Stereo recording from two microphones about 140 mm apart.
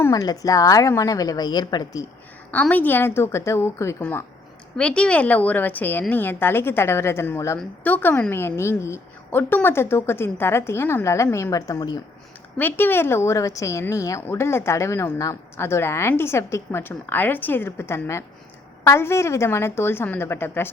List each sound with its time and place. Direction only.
0.0 s a woman's voice: 25° left (ahead or behind)
2.5 s a woman's voice: 10° left (ahead or behind)
4.8 s a woman's voice: 5° left (ahead or behind); by 11.9 s 25° left (ahead or behind)
12.5 s a woman's voice: 15° left (ahead or behind)